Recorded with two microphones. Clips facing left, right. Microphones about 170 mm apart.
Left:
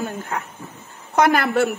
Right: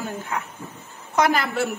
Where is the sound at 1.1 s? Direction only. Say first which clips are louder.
Left 4 dB; 60° left (ahead or behind).